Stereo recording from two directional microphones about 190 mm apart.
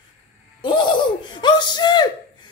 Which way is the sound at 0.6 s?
25° left (ahead or behind).